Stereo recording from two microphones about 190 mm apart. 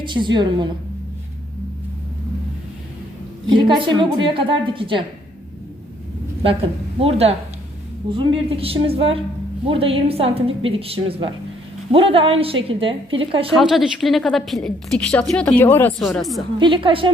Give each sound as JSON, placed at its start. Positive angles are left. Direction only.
{"t": 0.0, "sound": "a woman's voice", "side_deg": -25}
{"t": 3.4, "sound": "a woman's voice", "side_deg": -25}
{"t": 7.0, "sound": "a woman's voice", "side_deg": -30}
{"t": 13.6, "sound": "a woman's voice", "side_deg": 0}
{"t": 16.6, "sound": "a woman's voice", "side_deg": -25}